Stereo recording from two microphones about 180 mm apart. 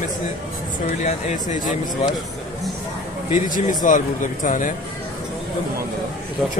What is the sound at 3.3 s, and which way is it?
A man's voice, 45° left (ahead or behind).